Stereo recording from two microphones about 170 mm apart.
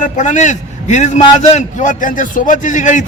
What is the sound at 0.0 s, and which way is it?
A man's voice, 45° left (ahead or behind).